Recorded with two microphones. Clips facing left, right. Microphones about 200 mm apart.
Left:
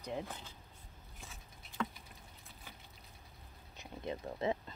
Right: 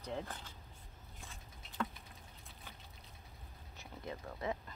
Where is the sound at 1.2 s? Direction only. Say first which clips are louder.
Even; centre (ahead or behind).